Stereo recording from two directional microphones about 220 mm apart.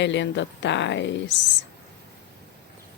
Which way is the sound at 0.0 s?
55° left (ahead or behind).